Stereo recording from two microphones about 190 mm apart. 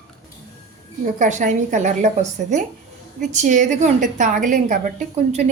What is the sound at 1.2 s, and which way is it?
A woman's voice, 40° right (ahead or behind).